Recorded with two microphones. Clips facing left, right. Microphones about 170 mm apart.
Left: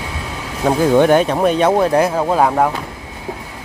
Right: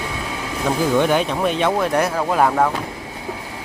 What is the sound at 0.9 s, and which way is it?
Speech, 50° left (ahead or behind).